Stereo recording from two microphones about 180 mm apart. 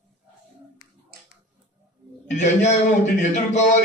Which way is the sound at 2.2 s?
40° left (ahead or behind).